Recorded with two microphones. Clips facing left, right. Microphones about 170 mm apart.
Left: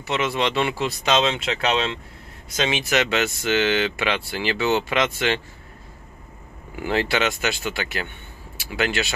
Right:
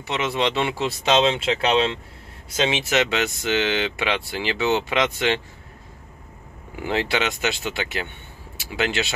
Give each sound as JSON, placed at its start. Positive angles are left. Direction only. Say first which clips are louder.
{"t": 0.0, "sound": "speech", "louder": "even", "side_deg": -20}
{"t": 6.8, "sound": "speech", "louder": "left 1 dB", "side_deg": -20}